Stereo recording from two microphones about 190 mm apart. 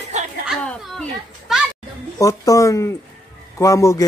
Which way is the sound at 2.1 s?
15° left (ahead or behind).